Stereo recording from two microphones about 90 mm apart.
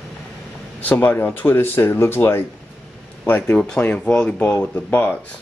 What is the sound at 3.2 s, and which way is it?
Speech, 15° left (ahead or behind).